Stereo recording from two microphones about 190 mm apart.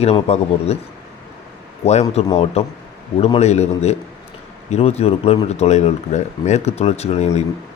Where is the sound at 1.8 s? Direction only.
35° left (ahead or behind).